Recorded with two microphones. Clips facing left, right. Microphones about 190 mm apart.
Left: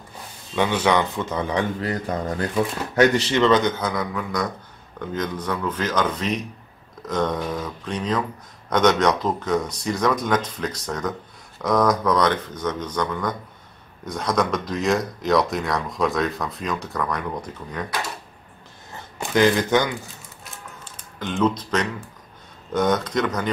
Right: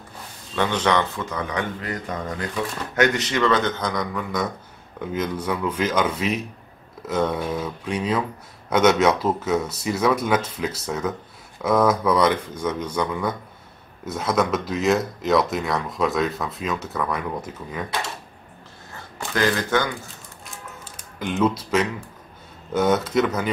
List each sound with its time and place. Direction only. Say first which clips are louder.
0.6 s speech: left 1 dB; 10° left (ahead or behind)
1.3 s speech: left 5 dB; 30° left (ahead or behind); by 17.8 s 5° right (ahead or behind)
19.1 s speech: left 4 dB; 20° left (ahead or behind)
20.8 s speech: right 2 dB; 10° right (ahead or behind)